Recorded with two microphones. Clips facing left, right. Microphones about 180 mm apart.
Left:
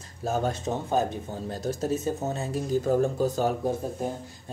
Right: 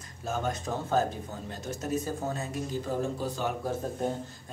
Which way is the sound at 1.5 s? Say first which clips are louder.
Left 4 dB; 35° left (ahead or behind).